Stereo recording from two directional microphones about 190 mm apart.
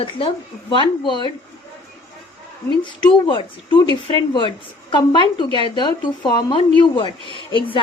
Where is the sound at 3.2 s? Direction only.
25° left (ahead or behind).